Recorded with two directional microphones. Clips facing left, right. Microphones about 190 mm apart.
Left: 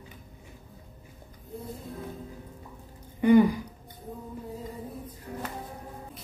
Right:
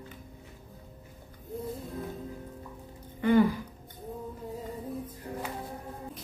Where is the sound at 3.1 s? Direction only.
15° left (ahead or behind).